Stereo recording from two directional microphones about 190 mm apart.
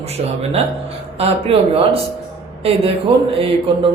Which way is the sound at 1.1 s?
30° right (ahead or behind).